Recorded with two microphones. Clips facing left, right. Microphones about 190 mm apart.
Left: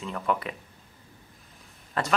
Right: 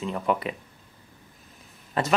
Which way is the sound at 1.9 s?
20° right (ahead or behind).